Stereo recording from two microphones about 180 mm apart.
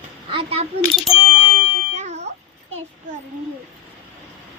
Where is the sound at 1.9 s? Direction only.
40° right (ahead or behind).